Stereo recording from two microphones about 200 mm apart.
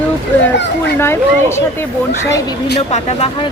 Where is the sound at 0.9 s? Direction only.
10° left (ahead or behind).